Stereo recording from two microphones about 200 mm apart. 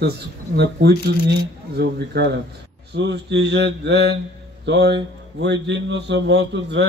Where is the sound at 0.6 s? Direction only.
55° right (ahead or behind).